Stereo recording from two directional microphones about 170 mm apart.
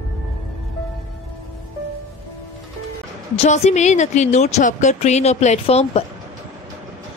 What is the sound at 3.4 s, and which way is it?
A woman's voice, 40° left (ahead or behind).